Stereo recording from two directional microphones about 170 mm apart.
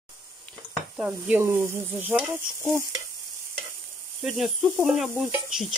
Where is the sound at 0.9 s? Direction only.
10° right (ahead or behind).